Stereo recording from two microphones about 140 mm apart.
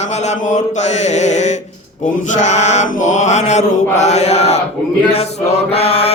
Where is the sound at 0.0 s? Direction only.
55° left (ahead or behind).